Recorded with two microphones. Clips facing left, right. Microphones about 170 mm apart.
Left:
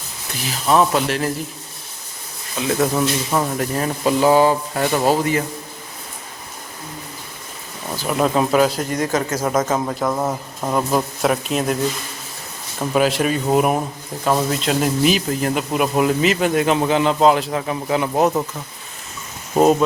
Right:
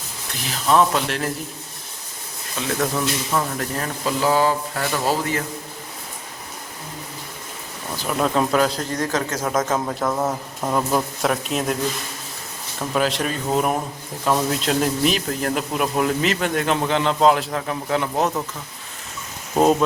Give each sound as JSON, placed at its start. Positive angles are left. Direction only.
{"t": 0.4, "sound": "speech", "side_deg": 5}
{"t": 2.6, "sound": "speech", "side_deg": 5}
{"t": 2.9, "sound": "speech", "side_deg": 20}
{"t": 7.9, "sound": "speech", "side_deg": 5}
{"t": 12.8, "sound": "speech", "side_deg": 5}